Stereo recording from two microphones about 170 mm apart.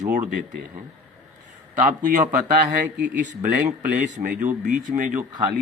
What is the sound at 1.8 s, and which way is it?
Speech, 50° right (ahead or behind).